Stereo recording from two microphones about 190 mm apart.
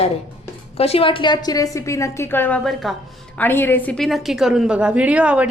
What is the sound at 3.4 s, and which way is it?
A woman's voice, 10° left (ahead or behind).